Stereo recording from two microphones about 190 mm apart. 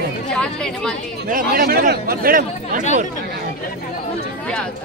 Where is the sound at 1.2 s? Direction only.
50° right (ahead or behind).